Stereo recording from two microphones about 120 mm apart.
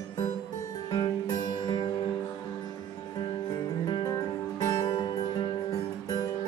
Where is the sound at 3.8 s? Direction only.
35° left (ahead or behind).